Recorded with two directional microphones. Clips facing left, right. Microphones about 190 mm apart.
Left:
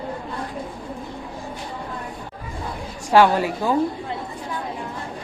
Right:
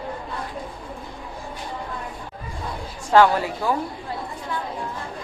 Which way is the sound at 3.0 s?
15° left (ahead or behind).